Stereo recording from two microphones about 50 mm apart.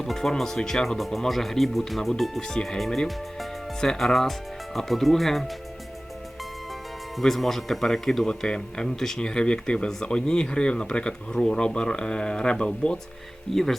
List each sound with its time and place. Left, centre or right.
0.0 s speech: centre
7.2 s a man's voice: centre
13.5 s a man's voice: centre